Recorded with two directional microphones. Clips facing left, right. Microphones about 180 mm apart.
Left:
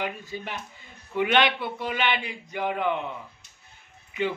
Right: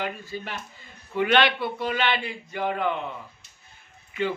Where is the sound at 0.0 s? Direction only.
15° left (ahead or behind).